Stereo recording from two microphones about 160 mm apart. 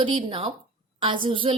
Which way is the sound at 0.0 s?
30° right (ahead or behind).